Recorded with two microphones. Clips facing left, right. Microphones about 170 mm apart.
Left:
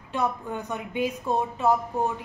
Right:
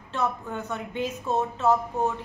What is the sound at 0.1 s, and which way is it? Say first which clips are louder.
A woman's voice: left 1 dB; 15° left (ahead or behind).